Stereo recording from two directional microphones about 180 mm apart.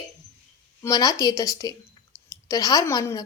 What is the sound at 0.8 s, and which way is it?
A woman's voice, 20° left (ahead or behind).